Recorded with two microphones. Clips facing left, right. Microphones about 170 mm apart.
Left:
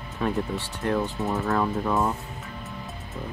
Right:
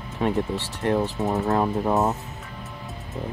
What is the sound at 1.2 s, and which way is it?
Speech, 20° right (ahead or behind).